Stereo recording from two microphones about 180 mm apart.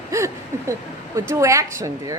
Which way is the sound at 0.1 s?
15° right (ahead or behind).